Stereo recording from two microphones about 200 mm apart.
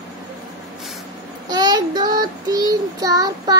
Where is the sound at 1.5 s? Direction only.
20° right (ahead or behind).